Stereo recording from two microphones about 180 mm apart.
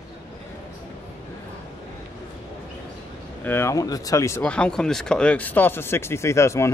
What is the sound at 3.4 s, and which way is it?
Speech, 10° left (ahead or behind).